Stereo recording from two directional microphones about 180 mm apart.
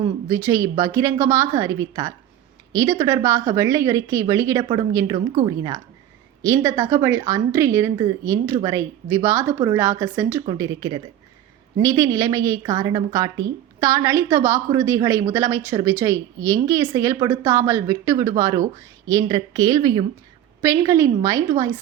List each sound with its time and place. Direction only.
0.3 s a woman's voice: 15° right (ahead or behind)
5.1 s a woman's voice: 40° right (ahead or behind)
5.5 s a woman's voice: 20° right (ahead or behind)